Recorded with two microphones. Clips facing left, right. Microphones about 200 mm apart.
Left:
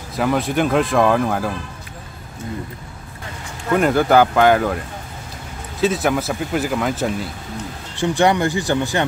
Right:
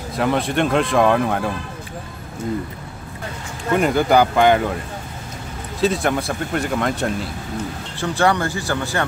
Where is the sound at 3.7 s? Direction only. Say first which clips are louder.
Left 1 dB; centre (ahead or behind).